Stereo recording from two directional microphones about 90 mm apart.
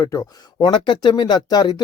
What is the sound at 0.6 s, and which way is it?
Speech, 60° left (ahead or behind).